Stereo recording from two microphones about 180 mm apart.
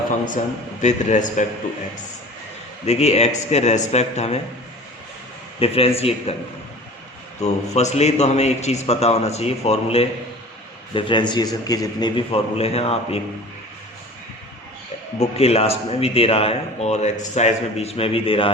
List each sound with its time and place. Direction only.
0.8 s a man's voice: 40° left (ahead or behind)
2.8 s a man's voice: 35° left (ahead or behind)
5.5 s a man's voice: 35° left (ahead or behind)
7.4 s a man's voice: 40° left (ahead or behind)
15.2 s a man's voice: 35° left (ahead or behind)